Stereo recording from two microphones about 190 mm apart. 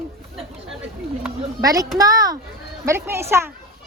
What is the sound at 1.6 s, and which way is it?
A child's voice, 20° right (ahead or behind).